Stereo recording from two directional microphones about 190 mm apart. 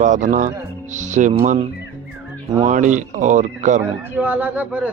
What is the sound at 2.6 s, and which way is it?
Speech, 40° right (ahead or behind).